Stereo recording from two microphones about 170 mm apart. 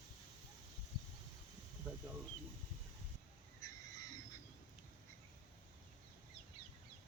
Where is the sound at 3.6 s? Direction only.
20° left (ahead or behind).